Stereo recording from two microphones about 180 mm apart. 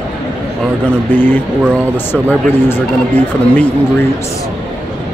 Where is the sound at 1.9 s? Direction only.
10° left (ahead or behind).